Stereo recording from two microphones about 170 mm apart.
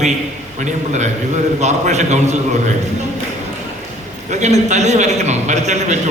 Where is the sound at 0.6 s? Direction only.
45° right (ahead or behind).